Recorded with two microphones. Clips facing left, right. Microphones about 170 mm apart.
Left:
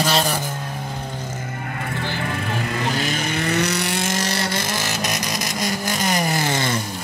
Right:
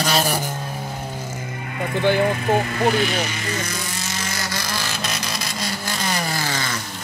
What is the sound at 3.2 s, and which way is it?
Speech, 60° left (ahead or behind).